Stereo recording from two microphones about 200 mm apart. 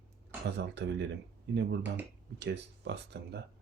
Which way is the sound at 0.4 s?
60° right (ahead or behind).